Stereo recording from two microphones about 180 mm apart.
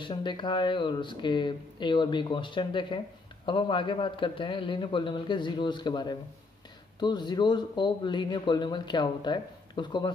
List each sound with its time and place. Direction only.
0.0 s speech: 25° left (ahead or behind)